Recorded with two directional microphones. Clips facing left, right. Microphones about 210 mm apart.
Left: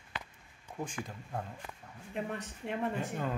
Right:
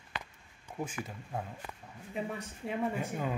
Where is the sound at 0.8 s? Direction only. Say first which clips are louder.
Right 1 dB; 5° right (ahead or behind).